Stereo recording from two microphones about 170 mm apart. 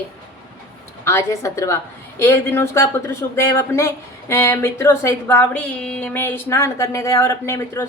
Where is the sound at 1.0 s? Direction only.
15° left (ahead or behind).